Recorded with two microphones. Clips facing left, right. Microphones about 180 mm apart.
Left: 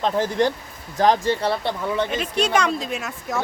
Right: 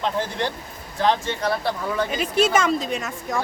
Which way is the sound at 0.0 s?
45° left (ahead or behind).